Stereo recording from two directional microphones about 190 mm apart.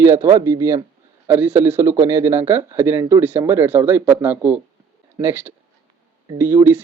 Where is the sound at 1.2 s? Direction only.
10° right (ahead or behind).